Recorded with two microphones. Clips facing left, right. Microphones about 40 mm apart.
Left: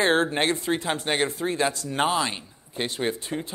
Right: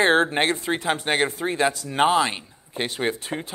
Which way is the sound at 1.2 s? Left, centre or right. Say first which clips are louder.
Right 2 dB; right.